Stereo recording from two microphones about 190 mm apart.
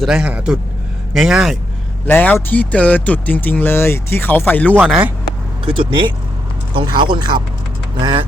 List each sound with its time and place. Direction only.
0.0 s speech: 5° right (ahead or behind)
2.0 s speech: 10° left (ahead or behind)
4.8 s speech: 10° right (ahead or behind)
5.6 s speech: 25° right (ahead or behind)